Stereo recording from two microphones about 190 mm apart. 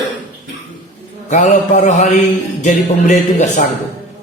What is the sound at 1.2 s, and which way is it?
A man's voice, 40° left (ahead or behind).